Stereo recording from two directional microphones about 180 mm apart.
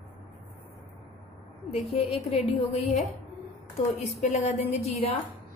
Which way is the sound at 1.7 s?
30° left (ahead or behind).